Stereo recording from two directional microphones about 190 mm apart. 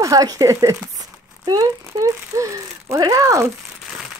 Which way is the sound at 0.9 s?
20° right (ahead or behind).